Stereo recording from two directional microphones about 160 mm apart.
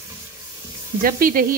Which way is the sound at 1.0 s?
60° right (ahead or behind).